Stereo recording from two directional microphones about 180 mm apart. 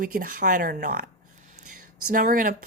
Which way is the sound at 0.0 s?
50° right (ahead or behind).